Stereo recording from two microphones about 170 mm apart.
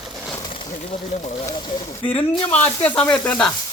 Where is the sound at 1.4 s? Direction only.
30° left (ahead or behind).